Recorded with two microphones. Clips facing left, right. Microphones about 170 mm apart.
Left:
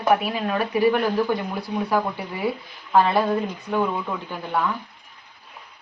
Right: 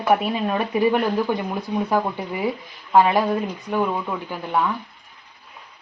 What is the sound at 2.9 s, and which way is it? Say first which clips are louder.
Speech: right 2 dB; 15° right (ahead or behind).